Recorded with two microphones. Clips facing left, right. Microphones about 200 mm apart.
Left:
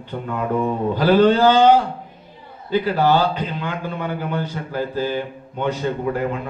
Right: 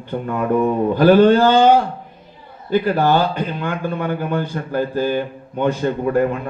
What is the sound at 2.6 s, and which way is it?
A man's voice, 50° right (ahead or behind).